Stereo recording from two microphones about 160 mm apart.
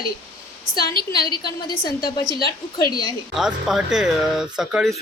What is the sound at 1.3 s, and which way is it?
Speech, 25° left (ahead or behind).